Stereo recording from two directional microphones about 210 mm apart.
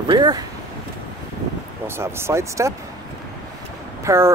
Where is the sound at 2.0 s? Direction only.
10° right (ahead or behind).